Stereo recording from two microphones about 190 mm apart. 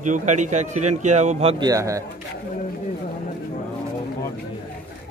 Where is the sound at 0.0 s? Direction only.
40° right (ahead or behind).